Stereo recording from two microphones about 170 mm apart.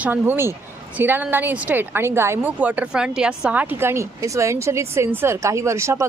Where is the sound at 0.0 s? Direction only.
10° right (ahead or behind).